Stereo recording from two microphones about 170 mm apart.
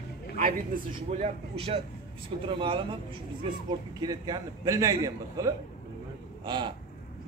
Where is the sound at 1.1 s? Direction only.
35° right (ahead or behind).